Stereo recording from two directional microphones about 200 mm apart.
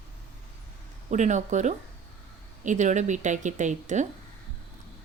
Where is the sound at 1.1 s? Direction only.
35° right (ahead or behind).